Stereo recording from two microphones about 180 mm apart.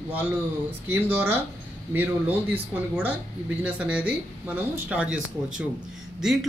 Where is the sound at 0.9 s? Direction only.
10° right (ahead or behind).